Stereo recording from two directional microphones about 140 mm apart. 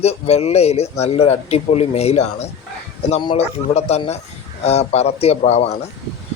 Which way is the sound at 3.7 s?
50° left (ahead or behind).